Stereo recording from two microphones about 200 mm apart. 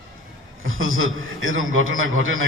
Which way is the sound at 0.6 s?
85° right.